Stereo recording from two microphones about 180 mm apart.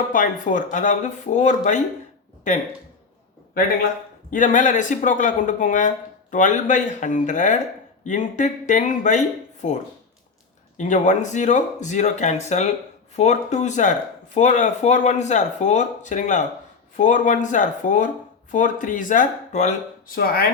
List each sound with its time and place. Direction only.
0.1 s speech: 45° left (ahead or behind)
4.3 s speech: 45° left (ahead or behind)
10.8 s speech: 40° left (ahead or behind)